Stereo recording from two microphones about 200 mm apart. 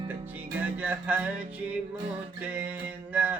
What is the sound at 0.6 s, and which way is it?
Music, 10° right (ahead or behind).